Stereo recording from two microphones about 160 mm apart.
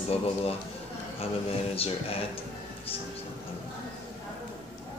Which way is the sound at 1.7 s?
35° left (ahead or behind).